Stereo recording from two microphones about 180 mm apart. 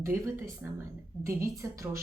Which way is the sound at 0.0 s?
15° right (ahead or behind).